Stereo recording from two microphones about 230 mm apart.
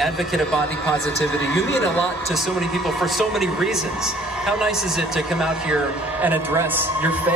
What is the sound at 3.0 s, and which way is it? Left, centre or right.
A man's voice, centre.